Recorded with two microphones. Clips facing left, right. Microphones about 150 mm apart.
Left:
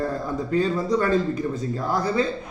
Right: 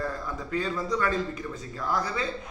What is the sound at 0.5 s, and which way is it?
A man's voice, 35° left (ahead or behind).